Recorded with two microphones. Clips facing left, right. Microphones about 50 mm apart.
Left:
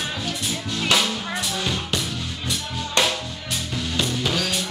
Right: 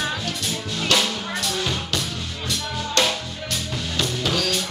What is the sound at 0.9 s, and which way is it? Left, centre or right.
Music, centre.